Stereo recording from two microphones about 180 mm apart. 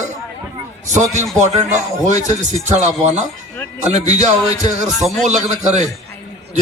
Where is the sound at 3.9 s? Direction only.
40° right (ahead or behind).